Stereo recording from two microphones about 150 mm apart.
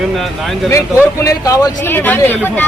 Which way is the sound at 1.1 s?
20° left (ahead or behind).